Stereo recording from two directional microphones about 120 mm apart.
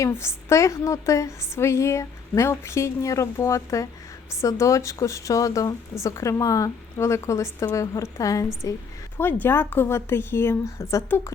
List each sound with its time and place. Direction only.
0.0 s a woman's voice: 20° left (ahead or behind)
9.1 s a woman's voice: 15° left (ahead or behind)